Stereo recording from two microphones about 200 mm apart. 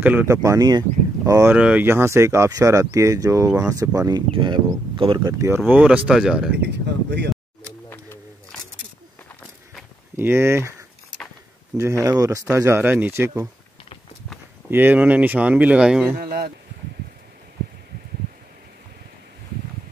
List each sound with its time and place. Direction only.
0.0 s speech: 10° right (ahead or behind)
5.7 s speech: 10° right (ahead or behind)
6.6 s speech: 55° right (ahead or behind)
7.9 s a sound: 10° left (ahead or behind)
10.1 s speech: 10° right (ahead or behind)
14.7 s speech: 10° right (ahead or behind)
16.2 s speech: 45° right (ahead or behind)